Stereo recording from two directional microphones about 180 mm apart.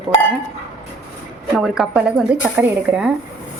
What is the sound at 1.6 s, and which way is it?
A woman's voice, centre (ahead or behind).